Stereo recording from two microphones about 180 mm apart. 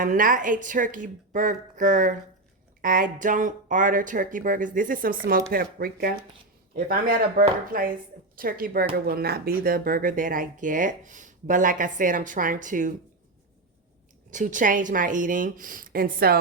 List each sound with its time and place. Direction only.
0.0 s speech: 50° right (ahead or behind)
14.3 s speech: 45° right (ahead or behind)